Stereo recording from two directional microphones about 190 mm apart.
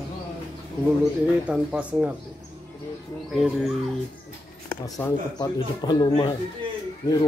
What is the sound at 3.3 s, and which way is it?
Speech, centre (ahead or behind).